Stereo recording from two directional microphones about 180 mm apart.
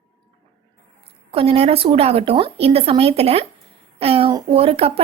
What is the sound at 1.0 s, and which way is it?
Speech, 35° right (ahead or behind).